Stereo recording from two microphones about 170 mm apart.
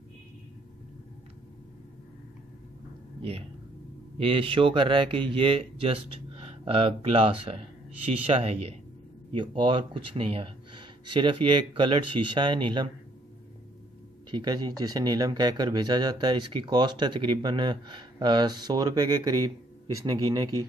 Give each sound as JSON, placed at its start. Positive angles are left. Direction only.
{"t": 3.2, "sound": "speech", "side_deg": -35}
{"t": 14.3, "sound": "speech", "side_deg": -25}